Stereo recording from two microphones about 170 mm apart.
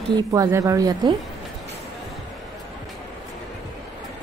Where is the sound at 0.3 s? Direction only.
20° right (ahead or behind).